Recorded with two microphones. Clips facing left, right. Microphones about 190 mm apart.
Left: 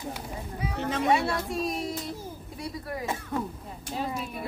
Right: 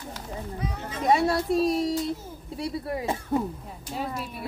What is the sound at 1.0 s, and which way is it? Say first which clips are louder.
Speech: right 5 dB; 35° right (ahead or behind).